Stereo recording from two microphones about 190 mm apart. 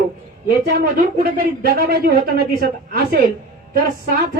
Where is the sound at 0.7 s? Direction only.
55° right (ahead or behind).